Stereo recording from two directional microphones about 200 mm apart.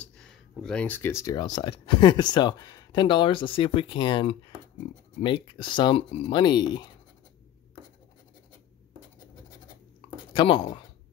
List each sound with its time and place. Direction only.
0.0 s speech: 5° left (ahead or behind); by 6.8 s 20° left (ahead or behind)
10.3 s speech: 25° left (ahead or behind)